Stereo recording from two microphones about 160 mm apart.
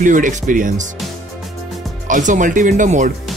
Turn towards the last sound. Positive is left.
turn(degrees=-50)  # may be behind; listen again after turning